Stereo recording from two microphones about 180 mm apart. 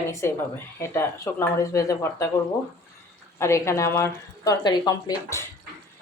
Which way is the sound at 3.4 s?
15° left (ahead or behind).